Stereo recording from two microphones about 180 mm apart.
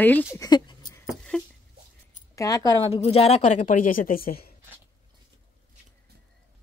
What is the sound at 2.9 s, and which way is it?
A woman's voice, 35° left (ahead or behind).